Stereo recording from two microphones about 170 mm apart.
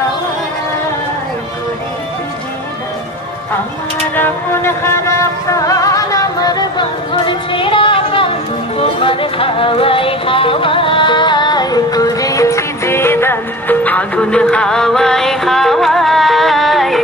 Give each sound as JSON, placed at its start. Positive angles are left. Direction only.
{"t": 4.1, "sound": "music", "side_deg": 10}